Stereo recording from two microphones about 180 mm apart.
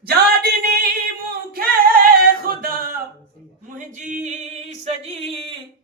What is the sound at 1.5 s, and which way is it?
Singing, 55° right (ahead or behind).